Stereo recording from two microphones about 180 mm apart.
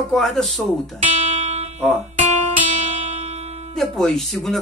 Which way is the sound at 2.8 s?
40° right (ahead or behind).